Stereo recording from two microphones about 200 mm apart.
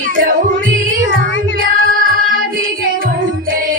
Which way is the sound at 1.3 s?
65° left (ahead or behind).